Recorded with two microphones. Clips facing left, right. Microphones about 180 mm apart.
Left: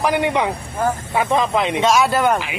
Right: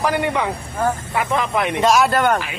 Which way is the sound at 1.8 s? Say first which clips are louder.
Right 1 dB; centre (ahead or behind).